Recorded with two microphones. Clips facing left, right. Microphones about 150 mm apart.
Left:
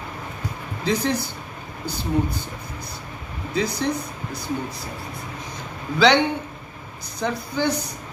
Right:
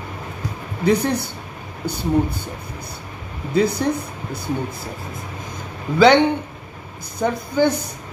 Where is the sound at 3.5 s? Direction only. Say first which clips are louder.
Right 5 dB; 55° right (ahead or behind).